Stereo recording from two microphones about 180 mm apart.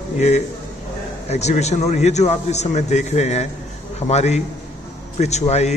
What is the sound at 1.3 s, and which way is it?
A man's voice, 40° left (ahead or behind).